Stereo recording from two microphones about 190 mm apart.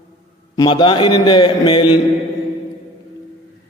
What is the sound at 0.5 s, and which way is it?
A man's voice, 25° left (ahead or behind).